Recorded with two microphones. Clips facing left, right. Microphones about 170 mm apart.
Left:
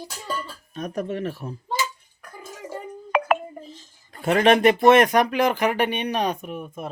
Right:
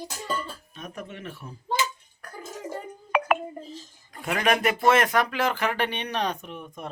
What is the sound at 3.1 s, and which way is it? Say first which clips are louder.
Music: left 2 dB; centre (ahead or behind).